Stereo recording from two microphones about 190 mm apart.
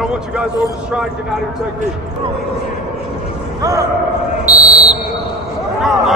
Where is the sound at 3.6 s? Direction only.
15° right (ahead or behind).